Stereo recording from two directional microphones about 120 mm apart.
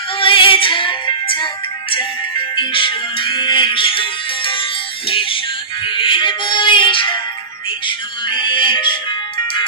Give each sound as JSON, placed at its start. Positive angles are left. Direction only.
{"t": 0.2, "sound": "music", "side_deg": 45}
{"t": 2.6, "sound": "music", "side_deg": 45}
{"t": 5.0, "sound": "music", "side_deg": 45}